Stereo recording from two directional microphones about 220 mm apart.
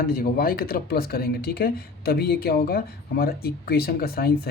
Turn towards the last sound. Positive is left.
turn(degrees=45)  # may be behind; listen again after turning